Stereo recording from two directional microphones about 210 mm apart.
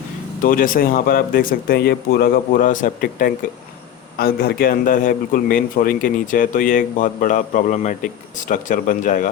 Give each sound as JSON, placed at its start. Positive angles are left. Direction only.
{"t": 0.4, "sound": "a man's voice", "side_deg": 40}